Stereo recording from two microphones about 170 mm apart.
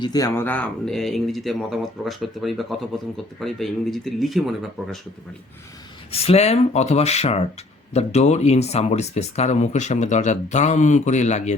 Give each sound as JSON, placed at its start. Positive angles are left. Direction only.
{"t": 0.0, "sound": "speech", "side_deg": 20}
{"t": 6.1, "sound": "speech", "side_deg": 35}